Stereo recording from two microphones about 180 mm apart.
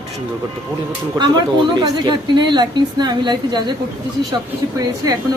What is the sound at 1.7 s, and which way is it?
A woman's voice, 25° right (ahead or behind).